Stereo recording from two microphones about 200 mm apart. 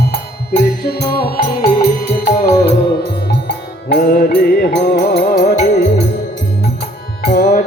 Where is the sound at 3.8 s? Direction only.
50° left (ahead or behind).